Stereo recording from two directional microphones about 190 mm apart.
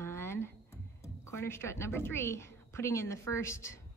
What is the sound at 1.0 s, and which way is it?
A woman's voice, 15° left (ahead or behind).